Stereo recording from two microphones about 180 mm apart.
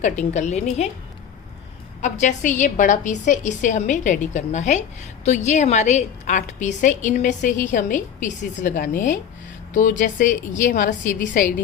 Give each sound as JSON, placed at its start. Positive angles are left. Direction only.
{"t": 0.0, "sound": "a woman's voice", "side_deg": 40}
{"t": 2.0, "sound": "a woman's voice", "side_deg": 40}